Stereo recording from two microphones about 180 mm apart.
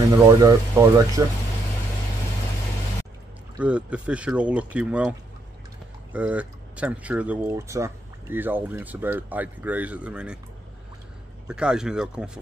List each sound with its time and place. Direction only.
0.4 s speech: 20° right (ahead or behind)
3.5 s speech: 5° right (ahead or behind)
6.1 s speech: 5° right (ahead or behind)
11.4 s speech: 5° right (ahead or behind)